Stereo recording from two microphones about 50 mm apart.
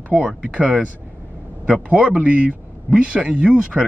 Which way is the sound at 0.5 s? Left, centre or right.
Right.